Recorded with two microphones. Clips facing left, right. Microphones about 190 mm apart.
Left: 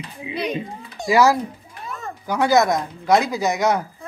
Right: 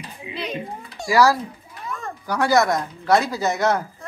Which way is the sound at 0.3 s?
20° left (ahead or behind).